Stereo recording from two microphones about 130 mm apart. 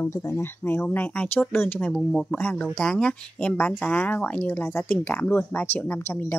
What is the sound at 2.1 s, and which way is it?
Speech, centre (ahead or behind).